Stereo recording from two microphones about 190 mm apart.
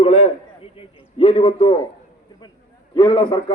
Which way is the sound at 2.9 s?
25° left (ahead or behind).